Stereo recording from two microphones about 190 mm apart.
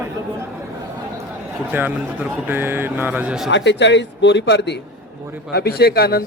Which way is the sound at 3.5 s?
70° left (ahead or behind).